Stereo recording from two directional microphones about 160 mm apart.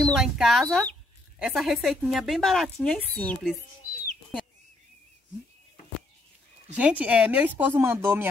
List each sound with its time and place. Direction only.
0.0 s a woman's voice: centre (ahead or behind)
6.7 s speech: 10° right (ahead or behind)